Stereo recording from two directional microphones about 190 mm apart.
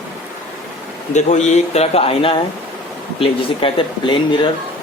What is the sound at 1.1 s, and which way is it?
Speech, 35° left (ahead or behind).